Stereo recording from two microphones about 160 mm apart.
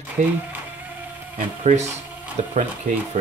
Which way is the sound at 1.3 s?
45° right (ahead or behind).